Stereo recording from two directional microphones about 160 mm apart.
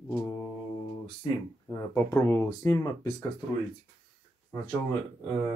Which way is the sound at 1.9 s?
15° left (ahead or behind).